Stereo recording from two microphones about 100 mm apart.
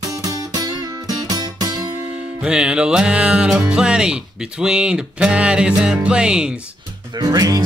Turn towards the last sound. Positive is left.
turn(degrees=-40)  # may be behind; listen again after turning